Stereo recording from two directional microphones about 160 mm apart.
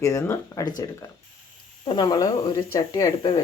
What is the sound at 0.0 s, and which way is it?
Speech, 20° left (ahead or behind).